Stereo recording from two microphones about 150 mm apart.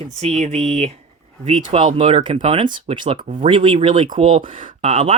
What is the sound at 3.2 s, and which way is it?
Speech, 55° right (ahead or behind).